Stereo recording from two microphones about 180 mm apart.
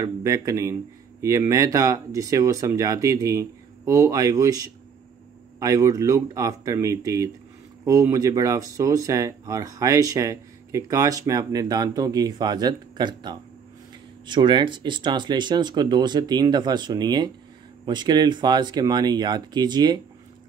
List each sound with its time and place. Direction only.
0.0 s speech: 20° right (ahead or behind)